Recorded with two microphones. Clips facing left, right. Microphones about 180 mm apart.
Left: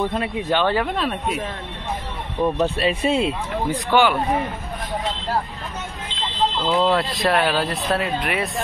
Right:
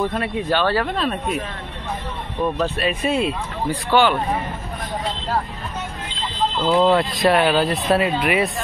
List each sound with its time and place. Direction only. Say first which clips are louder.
0.0 s speech: right 1 dB; 20° left (ahead or behind)
2.4 s speech: left 2 dB; 20° left (ahead or behind)
3.9 s speech: right 1 dB; 10° left (ahead or behind)
6.7 s speech: right 5 dB; centre (ahead or behind)